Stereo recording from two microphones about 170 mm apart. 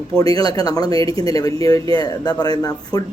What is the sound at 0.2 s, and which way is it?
Speech, 20° left (ahead or behind).